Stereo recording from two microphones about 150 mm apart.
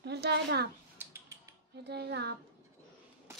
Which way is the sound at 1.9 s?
90° right.